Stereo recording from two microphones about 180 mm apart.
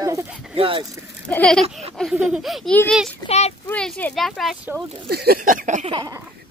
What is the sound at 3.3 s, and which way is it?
Speech, 35° left (ahead or behind).